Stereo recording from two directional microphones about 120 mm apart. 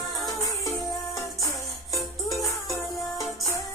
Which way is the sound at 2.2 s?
30° left (ahead or behind).